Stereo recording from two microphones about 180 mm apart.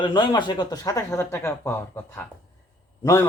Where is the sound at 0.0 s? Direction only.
25° left (ahead or behind).